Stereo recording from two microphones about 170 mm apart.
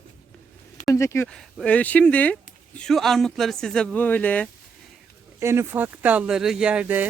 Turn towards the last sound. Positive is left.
turn(degrees=-10)  # may be behind; listen again after turning